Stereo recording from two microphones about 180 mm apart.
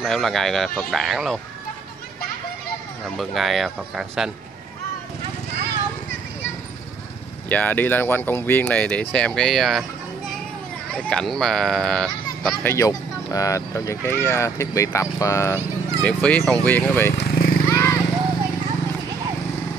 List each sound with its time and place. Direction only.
0.0 s speech: centre (ahead or behind)
3.2 s speech: centre (ahead or behind)
7.4 s speech: 10° left (ahead or behind)
10.9 s speech: 5° left (ahead or behind)
12.4 s speech: 15° left (ahead or behind)
17.2 s a sound: 55° left (ahead or behind)
17.6 s vehicle: 15° left (ahead or behind)